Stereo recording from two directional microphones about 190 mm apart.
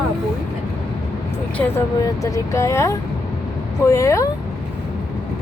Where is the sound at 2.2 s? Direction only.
15° left (ahead or behind).